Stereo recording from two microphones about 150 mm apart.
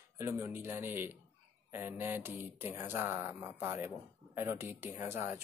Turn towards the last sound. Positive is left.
turn(degrees=-15)  # may be behind; listen again after turning